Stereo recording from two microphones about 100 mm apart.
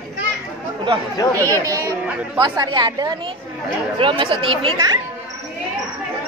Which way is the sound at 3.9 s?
60° right (ahead or behind).